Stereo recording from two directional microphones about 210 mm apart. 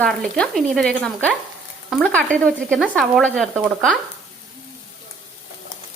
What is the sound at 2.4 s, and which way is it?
Frying, centre (ahead or behind).